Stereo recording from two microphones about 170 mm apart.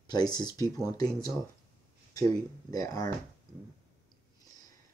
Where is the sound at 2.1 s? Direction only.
20° left (ahead or behind).